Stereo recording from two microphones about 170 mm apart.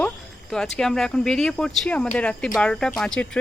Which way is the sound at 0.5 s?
5° left (ahead or behind).